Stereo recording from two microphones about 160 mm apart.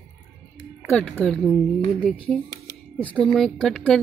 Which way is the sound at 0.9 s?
5° left (ahead or behind).